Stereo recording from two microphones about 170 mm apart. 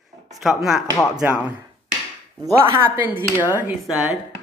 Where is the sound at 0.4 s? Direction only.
Centre (ahead or behind).